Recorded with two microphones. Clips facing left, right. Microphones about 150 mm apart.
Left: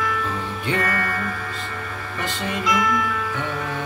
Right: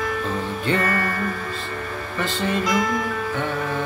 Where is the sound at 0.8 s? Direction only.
35° right (ahead or behind).